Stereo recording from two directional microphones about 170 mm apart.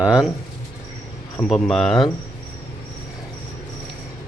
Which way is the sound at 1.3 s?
Centre (ahead or behind).